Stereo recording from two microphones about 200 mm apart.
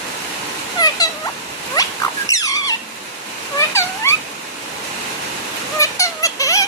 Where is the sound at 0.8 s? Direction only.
20° left (ahead or behind).